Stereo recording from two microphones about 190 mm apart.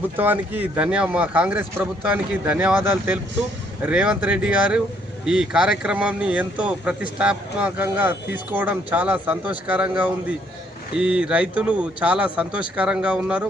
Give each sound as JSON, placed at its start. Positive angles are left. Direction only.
{"t": 0.2, "sound": "speech", "side_deg": -10}